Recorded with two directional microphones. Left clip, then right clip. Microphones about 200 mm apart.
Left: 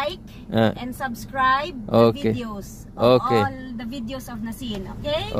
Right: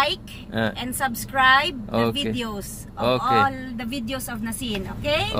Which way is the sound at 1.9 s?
60° left (ahead or behind).